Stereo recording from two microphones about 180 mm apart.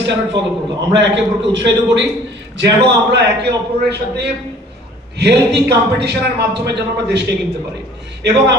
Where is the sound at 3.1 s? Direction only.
70° right (ahead or behind).